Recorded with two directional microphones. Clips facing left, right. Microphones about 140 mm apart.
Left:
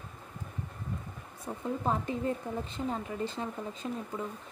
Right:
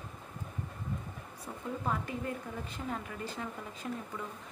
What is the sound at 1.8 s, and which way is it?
A woman's voice, 30° left (ahead or behind).